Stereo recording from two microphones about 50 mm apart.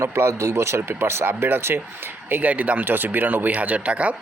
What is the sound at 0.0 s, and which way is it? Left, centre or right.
Speech, right.